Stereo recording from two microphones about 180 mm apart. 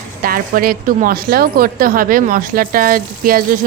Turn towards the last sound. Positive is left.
turn(degrees=-55)  # may be behind; listen again after turning